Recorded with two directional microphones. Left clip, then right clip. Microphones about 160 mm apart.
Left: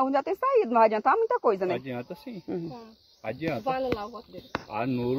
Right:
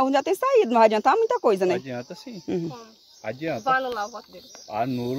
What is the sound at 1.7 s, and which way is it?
Speech, 20° right (ahead or behind).